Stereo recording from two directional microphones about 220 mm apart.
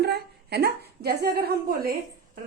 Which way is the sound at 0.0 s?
45° right (ahead or behind).